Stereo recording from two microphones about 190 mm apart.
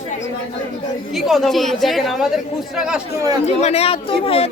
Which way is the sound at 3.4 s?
35° left (ahead or behind).